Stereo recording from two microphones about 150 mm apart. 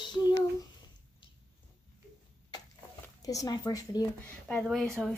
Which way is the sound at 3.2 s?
25° left (ahead or behind).